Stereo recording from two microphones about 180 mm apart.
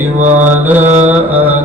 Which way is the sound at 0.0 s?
10° right (ahead or behind).